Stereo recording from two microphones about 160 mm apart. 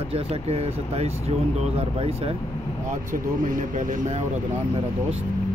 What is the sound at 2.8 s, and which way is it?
Speech, 55° right (ahead or behind).